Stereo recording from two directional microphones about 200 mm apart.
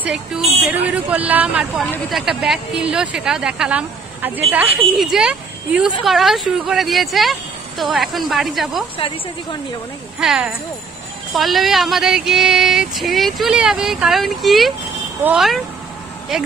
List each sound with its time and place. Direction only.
0.7 s speech: 10° right (ahead or behind)
8.9 s speech: 25° left (ahead or behind)
10.1 s speech: 5° right (ahead or behind)